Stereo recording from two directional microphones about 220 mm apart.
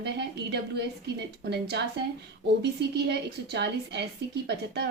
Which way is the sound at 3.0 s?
50° right (ahead or behind).